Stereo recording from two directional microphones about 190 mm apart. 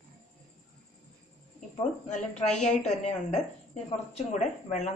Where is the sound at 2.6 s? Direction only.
40° left (ahead or behind).